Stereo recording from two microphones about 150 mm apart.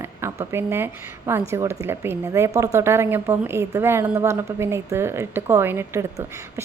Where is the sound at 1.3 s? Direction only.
15° right (ahead or behind).